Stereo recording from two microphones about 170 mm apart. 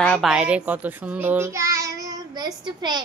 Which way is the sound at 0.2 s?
5° right (ahead or behind).